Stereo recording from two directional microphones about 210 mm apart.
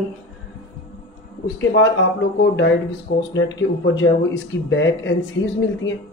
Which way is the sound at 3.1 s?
60° left (ahead or behind).